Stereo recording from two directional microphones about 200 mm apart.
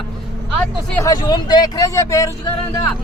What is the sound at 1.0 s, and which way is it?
Speech, 20° left (ahead or behind).